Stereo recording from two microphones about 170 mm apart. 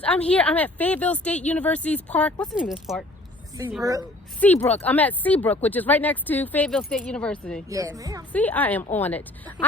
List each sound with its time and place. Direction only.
0.0 s speech: 10° left (ahead or behind); by 3.8 s 10° right (ahead or behind)
4.4 s speech: 10° left (ahead or behind)
7.7 s speech: 20° right (ahead or behind)
8.3 s speech: 10° left (ahead or behind)